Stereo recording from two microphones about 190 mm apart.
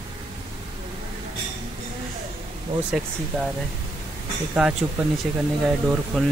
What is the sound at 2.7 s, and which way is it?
Speech, 30° right (ahead or behind).